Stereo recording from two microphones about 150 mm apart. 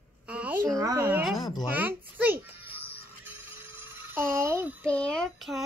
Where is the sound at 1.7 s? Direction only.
10° right (ahead or behind).